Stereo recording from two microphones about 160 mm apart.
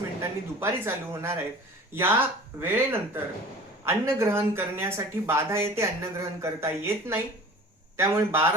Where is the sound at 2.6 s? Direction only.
15° right (ahead or behind).